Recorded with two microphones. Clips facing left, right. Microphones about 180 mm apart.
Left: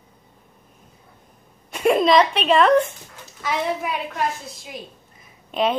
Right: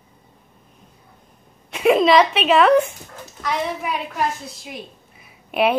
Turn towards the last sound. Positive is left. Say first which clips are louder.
# right 3 dB
turn(degrees=-10)  # may be behind; listen again after turning